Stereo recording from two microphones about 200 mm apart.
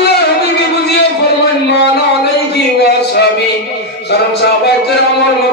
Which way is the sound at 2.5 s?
55° left (ahead or behind).